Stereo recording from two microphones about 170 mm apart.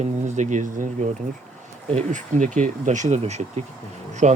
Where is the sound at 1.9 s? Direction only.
45° right (ahead or behind).